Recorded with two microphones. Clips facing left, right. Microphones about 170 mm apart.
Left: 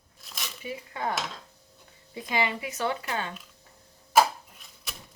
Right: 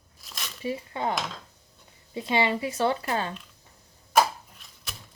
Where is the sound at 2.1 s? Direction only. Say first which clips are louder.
Right 4 dB; 30° right (ahead or behind).